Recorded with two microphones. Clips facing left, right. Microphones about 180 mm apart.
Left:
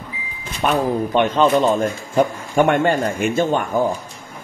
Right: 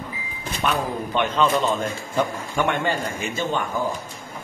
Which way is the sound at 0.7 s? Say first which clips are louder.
Left 7 dB; 40° left (ahead or behind).